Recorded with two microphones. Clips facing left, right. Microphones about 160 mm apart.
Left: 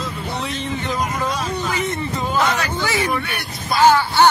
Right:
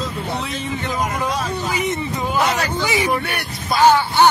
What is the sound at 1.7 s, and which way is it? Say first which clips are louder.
A man's voice: right 1 dB; 15° right (ahead or behind).